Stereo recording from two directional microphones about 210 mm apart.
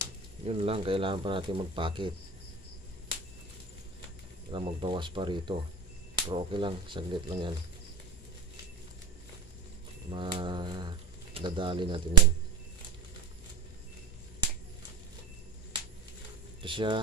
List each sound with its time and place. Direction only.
0.5 s speech: 25° right (ahead or behind)
4.5 s speech: 25° right (ahead or behind)
10.1 s speech: 20° right (ahead or behind)
16.6 s speech: 25° right (ahead or behind)